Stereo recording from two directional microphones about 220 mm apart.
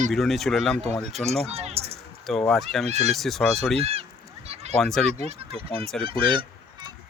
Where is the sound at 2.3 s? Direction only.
Centre (ahead or behind).